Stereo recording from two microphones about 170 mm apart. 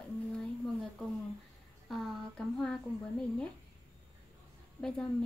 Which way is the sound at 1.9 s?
Centre (ahead or behind).